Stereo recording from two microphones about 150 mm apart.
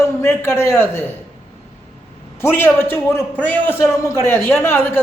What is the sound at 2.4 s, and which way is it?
A man's voice, 15° left (ahead or behind).